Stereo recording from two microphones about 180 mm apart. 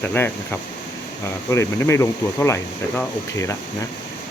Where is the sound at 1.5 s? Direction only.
15° left (ahead or behind).